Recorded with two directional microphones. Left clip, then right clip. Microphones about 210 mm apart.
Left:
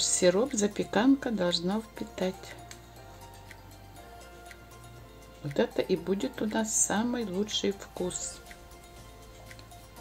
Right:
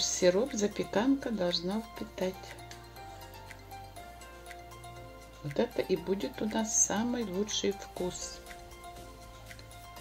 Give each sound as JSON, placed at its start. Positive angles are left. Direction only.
{"t": 0.0, "sound": "speech", "side_deg": 15}
{"t": 5.6, "sound": "speech", "side_deg": 15}